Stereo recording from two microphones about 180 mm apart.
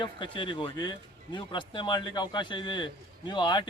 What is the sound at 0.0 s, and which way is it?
Speech, 25° left (ahead or behind).